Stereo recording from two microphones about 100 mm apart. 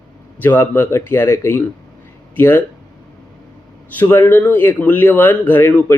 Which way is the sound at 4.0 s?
20° left (ahead or behind).